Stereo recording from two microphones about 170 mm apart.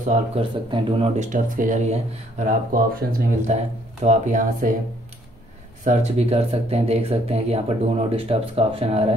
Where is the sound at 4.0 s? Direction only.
45° right (ahead or behind).